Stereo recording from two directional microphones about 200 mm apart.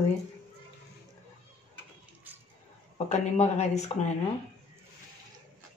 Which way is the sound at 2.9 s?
35° left (ahead or behind).